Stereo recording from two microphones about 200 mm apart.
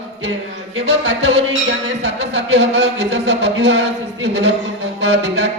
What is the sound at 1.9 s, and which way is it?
A man's voice, 60° right (ahead or behind).